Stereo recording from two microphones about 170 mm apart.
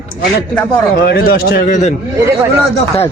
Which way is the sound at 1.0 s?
70° left (ahead or behind).